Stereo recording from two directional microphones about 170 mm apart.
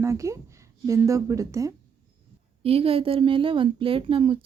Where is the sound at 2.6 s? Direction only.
35° right (ahead or behind).